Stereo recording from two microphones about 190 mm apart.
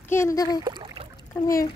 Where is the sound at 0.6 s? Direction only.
25° right (ahead or behind).